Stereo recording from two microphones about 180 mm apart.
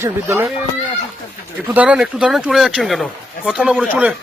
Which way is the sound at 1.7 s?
5° right (ahead or behind).